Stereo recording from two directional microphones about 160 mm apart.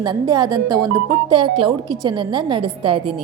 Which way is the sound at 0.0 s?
25° right (ahead or behind).